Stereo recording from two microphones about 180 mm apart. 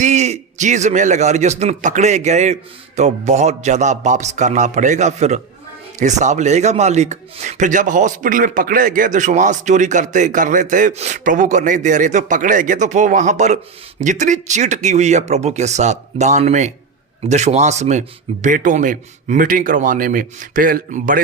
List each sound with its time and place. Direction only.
0.0 s a man's voice: 40° right (ahead or behind)